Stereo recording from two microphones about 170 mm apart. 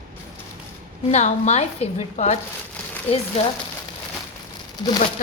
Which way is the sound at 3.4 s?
35° left (ahead or behind).